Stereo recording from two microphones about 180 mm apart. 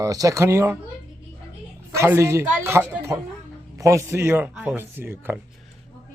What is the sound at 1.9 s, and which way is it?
Speech, 15° right (ahead or behind).